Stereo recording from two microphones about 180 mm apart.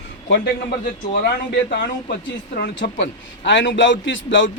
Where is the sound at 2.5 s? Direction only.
65° left (ahead or behind).